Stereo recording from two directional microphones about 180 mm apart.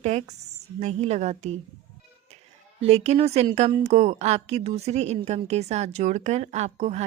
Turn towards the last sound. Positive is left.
turn(degrees=-35)  # may be behind; listen again after turning